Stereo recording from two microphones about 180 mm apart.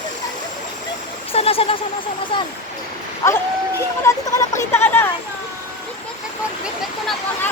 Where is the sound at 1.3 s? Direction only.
30° left (ahead or behind).